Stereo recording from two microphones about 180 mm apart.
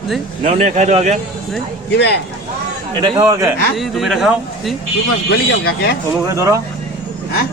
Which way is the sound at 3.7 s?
Centre (ahead or behind).